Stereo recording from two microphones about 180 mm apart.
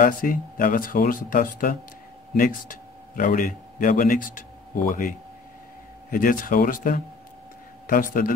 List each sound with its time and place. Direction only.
0.0 s a man's voice: 50° left (ahead or behind)